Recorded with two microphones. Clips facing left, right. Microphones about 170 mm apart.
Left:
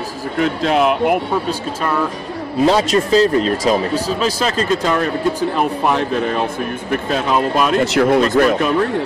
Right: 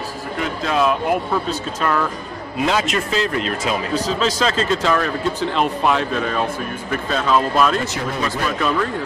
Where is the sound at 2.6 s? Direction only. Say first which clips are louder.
Left 6 dB; 35° left (ahead or behind).